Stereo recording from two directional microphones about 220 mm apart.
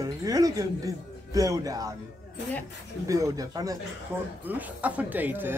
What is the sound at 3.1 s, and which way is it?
Speech, 15° right (ahead or behind).